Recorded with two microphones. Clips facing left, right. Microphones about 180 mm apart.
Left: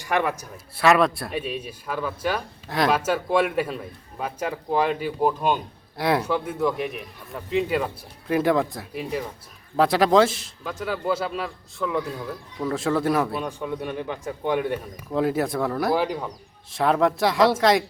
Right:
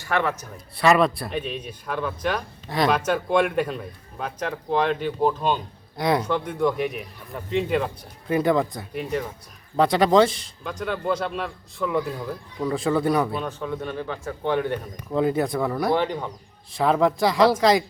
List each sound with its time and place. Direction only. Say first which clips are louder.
0.0 s speech: even; 15° left (ahead or behind)